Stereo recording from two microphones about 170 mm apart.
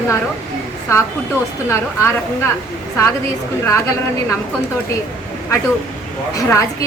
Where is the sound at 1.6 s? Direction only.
15° left (ahead or behind).